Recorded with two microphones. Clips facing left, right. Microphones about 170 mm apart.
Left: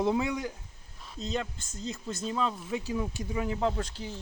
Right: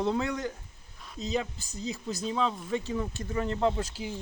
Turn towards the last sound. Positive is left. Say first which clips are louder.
# right 2 dB
turn(degrees=-10)  # may be behind; listen again after turning